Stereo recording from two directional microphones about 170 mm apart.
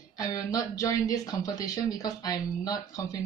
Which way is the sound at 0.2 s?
20° left (ahead or behind).